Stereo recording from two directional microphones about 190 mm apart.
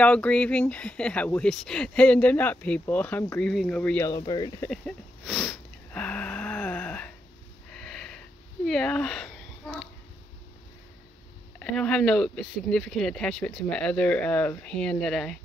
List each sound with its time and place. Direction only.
0.0 s speech: 5° left (ahead or behind)
4.1 s speech: 20° left (ahead or behind)
4.6 s sniff: centre (ahead or behind)
8.6 s a sound: 5° left (ahead or behind)
11.6 s speech: 5° left (ahead or behind)